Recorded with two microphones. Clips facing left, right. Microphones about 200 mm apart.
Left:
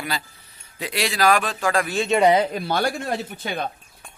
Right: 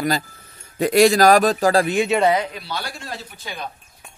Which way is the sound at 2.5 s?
50° left (ahead or behind).